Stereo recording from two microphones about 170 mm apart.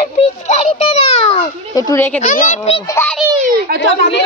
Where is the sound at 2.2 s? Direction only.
45° left (ahead or behind).